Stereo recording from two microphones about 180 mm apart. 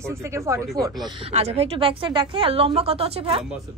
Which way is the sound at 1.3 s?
35° right (ahead or behind).